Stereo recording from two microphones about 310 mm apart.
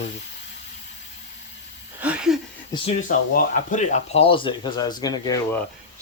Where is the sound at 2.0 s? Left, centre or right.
Centre.